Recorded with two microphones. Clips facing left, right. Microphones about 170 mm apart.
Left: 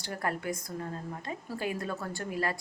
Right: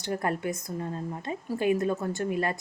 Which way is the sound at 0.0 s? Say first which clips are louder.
Right 5 dB; 20° right (ahead or behind).